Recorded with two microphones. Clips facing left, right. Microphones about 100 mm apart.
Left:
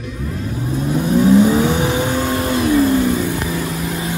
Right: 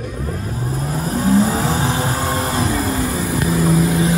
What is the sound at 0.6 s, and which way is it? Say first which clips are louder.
Vehicle: left 5 dB; 35° right (ahead or behind).